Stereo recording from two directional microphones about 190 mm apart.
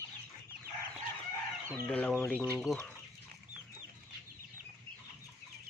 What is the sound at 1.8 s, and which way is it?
Speech, 10° left (ahead or behind).